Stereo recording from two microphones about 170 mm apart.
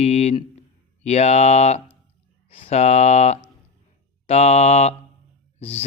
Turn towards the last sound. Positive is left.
turn(degrees=35)  # may be behind; listen again after turning